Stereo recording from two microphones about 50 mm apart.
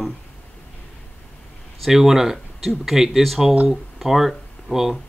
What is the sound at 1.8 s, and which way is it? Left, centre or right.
Speech, centre.